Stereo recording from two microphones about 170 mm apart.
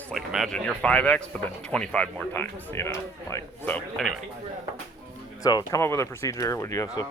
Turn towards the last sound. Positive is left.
turn(degrees=20)  # may be behind; listen again after turning